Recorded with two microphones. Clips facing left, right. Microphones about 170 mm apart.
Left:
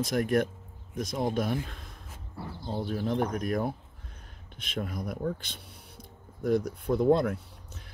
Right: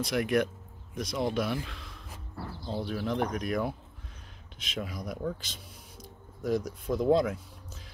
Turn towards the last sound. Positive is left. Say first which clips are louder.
# left 1 dB
turn(degrees=60)  # may be behind; listen again after turning